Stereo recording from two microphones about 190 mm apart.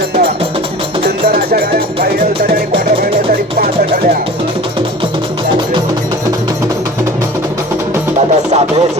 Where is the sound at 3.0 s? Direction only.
30° right (ahead or behind).